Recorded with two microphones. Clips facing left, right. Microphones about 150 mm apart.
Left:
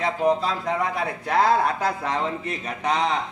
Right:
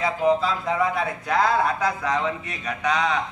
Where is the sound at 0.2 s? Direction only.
40° left (ahead or behind).